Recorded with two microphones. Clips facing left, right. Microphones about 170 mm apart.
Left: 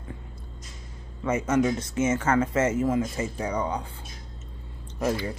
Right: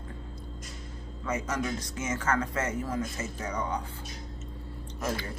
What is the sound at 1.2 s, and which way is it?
Speech, 25° left (ahead or behind).